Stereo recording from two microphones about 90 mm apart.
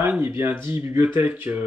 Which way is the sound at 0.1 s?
25° right (ahead or behind).